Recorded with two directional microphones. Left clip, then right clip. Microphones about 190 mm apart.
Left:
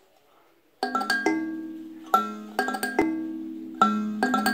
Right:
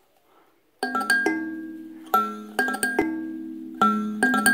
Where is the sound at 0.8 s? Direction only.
10° right (ahead or behind).